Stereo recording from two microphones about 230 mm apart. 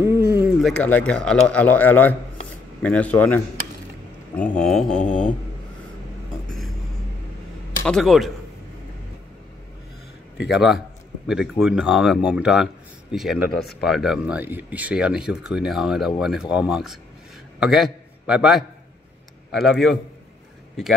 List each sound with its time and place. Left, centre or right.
0.0 s a sound: centre
0.7 s a man's voice: centre
7.8 s speech: centre
10.5 s speech: centre
13.5 s speech: left
13.8 s a man's voice: centre